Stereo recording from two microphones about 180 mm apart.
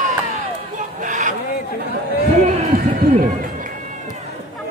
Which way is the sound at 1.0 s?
40° right (ahead or behind).